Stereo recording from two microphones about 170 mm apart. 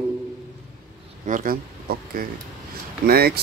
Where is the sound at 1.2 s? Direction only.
50° right (ahead or behind).